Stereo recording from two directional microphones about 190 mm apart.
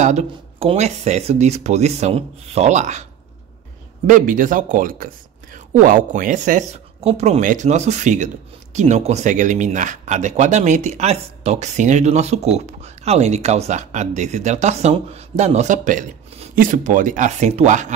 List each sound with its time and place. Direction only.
0.0 s speech: 40° right (ahead or behind)
4.1 s speech: 45° right (ahead or behind)